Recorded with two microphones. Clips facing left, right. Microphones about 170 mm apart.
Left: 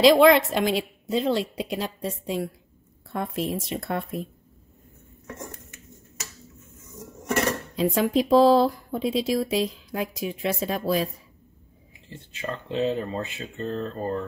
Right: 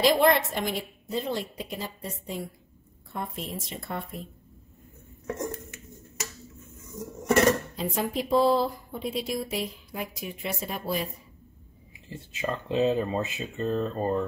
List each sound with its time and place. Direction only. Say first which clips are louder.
0.0 s a woman's voice: left 6 dB; 90° left; by 4.2 s 75° left (ahead or behind)
7.7 s a woman's voice: left 7 dB; 90° left
12.1 s speech: right 2 dB; 10° right (ahead or behind)